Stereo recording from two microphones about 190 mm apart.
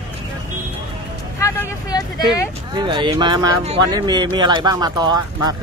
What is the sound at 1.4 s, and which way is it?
Vehicle, 15° left (ahead or behind).